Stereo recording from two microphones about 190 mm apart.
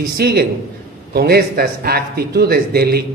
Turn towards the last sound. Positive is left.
turn(degrees=-55)  # may be behind; listen again after turning